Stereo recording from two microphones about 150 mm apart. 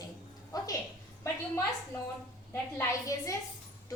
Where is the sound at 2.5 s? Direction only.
20° left (ahead or behind).